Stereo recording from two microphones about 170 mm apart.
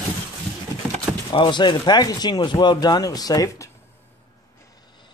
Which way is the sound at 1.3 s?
30° left (ahead or behind).